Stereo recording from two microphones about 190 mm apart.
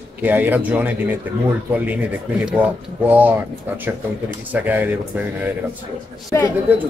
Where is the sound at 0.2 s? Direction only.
10° right (ahead or behind).